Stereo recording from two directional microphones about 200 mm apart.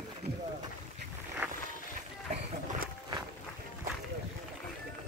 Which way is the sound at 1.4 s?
10° right (ahead or behind).